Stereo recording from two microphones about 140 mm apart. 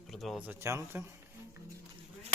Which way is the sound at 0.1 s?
Centre (ahead or behind).